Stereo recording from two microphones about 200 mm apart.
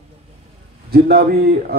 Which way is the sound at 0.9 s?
50° right (ahead or behind).